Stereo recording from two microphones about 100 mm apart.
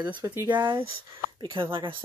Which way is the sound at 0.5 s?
50° right (ahead or behind).